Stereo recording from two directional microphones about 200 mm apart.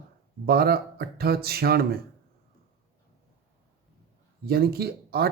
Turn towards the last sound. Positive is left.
turn(degrees=-50)  # may be behind; listen again after turning